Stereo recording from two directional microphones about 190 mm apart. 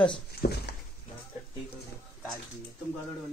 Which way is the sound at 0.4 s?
45° left (ahead or behind).